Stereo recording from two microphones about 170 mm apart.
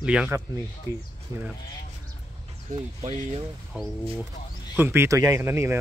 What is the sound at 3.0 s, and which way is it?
Speech, 40° right (ahead or behind).